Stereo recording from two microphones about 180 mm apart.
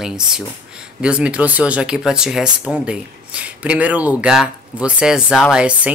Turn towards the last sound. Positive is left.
turn(degrees=-5)  # may be behind; listen again after turning